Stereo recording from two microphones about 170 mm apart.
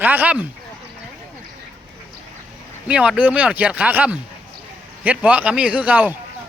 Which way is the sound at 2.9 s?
5° right (ahead or behind).